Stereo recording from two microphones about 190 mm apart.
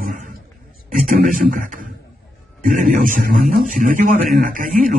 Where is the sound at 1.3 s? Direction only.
45° right (ahead or behind).